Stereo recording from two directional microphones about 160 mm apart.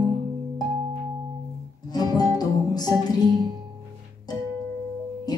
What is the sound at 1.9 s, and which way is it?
Music, 25° left (ahead or behind).